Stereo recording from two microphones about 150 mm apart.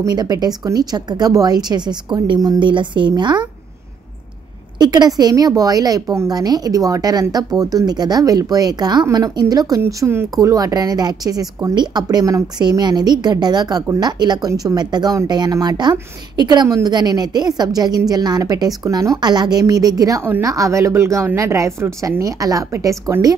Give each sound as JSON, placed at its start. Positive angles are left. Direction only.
{"t": 0.0, "sound": "a woman's voice", "side_deg": -25}
{"t": 4.7, "sound": "a woman's voice", "side_deg": -30}